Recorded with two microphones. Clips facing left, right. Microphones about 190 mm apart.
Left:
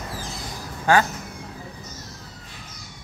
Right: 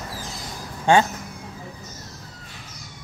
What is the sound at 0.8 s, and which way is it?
Speech, 25° right (ahead or behind).